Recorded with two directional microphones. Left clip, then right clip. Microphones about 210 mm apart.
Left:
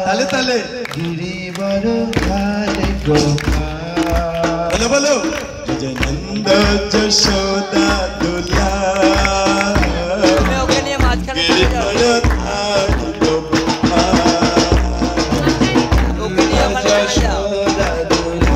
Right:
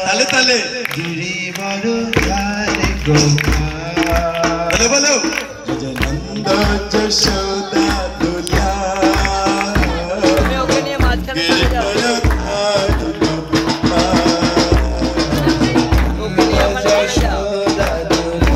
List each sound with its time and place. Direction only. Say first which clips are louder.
0.0 s a man's voice: right 2 dB; 35° left (ahead or behind)
1.7 s music: left 2 dB; 25° left (ahead or behind)
4.5 s speech: even; 15° left (ahead or behind)
6.4 s music: left 3 dB; 15° left (ahead or behind)